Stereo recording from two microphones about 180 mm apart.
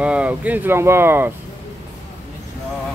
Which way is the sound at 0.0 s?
5° right (ahead or behind).